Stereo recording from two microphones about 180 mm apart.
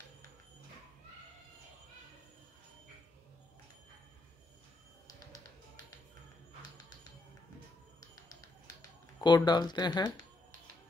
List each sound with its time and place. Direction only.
9.2 s speech: 25° left (ahead or behind)